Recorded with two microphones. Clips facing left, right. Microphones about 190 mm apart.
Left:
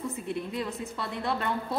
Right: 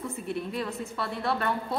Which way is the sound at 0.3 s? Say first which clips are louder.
Right 2 dB; 20° left (ahead or behind).